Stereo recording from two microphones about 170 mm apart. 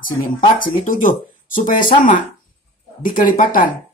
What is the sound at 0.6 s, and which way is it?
Speech, 50° left (ahead or behind).